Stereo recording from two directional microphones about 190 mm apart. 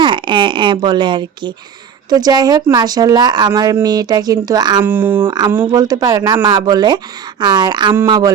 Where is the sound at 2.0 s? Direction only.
20° right (ahead or behind).